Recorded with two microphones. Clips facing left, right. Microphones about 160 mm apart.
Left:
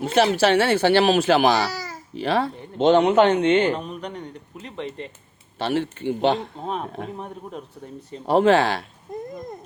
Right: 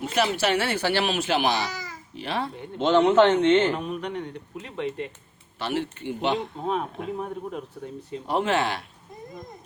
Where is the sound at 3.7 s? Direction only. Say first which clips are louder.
Even; 5° right (ahead or behind).